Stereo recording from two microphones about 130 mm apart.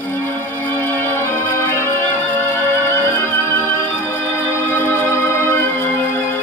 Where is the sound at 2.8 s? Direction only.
20° left (ahead or behind).